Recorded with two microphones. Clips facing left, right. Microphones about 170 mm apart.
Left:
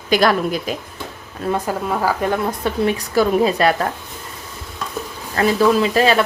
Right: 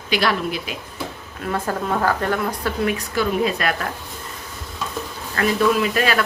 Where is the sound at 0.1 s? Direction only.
45° left (ahead or behind).